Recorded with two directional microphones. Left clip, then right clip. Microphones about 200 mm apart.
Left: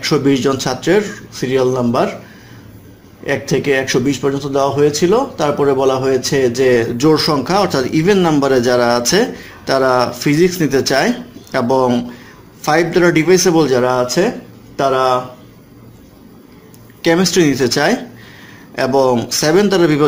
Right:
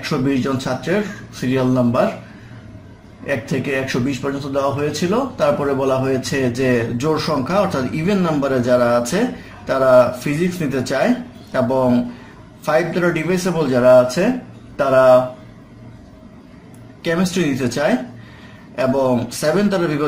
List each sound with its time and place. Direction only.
0.0 s a man's voice: 40° left (ahead or behind)
3.3 s a man's voice: 40° left (ahead or behind)
12.6 s speech: 40° left (ahead or behind)
17.0 s a man's voice: 40° left (ahead or behind)